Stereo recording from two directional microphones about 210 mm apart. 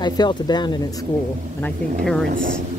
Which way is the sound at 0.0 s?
20° left (ahead or behind).